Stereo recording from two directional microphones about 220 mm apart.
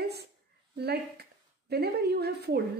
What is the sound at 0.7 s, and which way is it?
A woman's voice, 45° right (ahead or behind).